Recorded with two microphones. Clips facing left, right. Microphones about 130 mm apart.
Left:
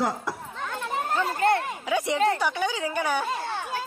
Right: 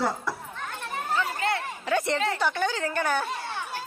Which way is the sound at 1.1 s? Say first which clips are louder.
Left 4 dB; 50° left (ahead or behind).